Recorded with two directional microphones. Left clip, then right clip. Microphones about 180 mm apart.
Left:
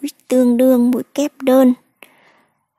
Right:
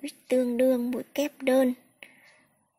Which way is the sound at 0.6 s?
35° left (ahead or behind).